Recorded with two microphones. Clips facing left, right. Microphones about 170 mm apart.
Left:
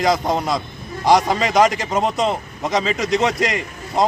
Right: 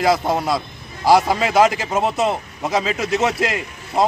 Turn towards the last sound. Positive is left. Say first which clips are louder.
# even
turn(degrees=-5)  # may be behind; listen again after turning